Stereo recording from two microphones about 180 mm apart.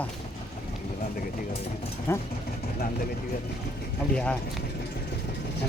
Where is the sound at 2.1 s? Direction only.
15° left (ahead or behind).